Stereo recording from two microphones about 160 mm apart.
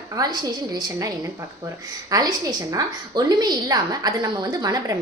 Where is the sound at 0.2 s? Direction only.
25° right (ahead or behind).